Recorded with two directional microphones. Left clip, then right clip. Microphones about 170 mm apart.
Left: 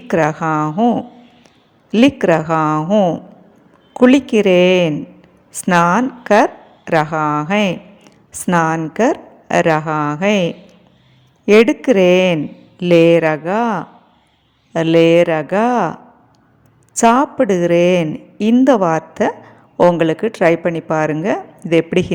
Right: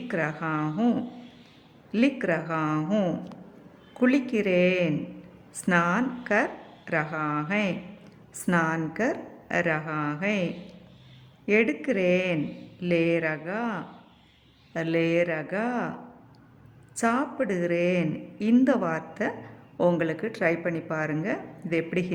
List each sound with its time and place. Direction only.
0.1 s a woman's voice: 45° left (ahead or behind)
0.8 s speech: 25° left (ahead or behind)
1.9 s a woman's voice: 45° left (ahead or behind)
2.9 s speech: 25° left (ahead or behind)
3.9 s a woman's voice: 45° left (ahead or behind)